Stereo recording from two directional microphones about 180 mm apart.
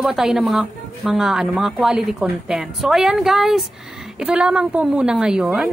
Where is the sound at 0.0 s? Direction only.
Centre (ahead or behind).